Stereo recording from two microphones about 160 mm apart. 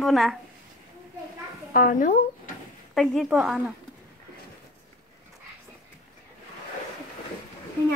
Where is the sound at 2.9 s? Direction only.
Centre (ahead or behind).